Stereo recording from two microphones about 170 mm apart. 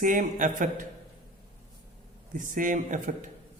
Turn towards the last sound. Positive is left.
turn(degrees=-50)  # may be behind; listen again after turning